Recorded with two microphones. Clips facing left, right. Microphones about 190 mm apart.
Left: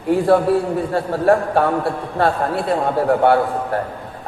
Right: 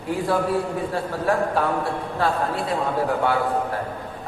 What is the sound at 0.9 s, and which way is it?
A man's voice, 60° left (ahead or behind).